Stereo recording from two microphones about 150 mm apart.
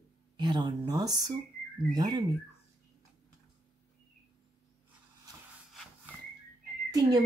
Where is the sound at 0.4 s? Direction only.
30° right (ahead or behind).